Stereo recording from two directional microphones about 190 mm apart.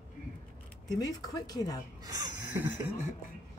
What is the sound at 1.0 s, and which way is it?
Speech, 20° left (ahead or behind).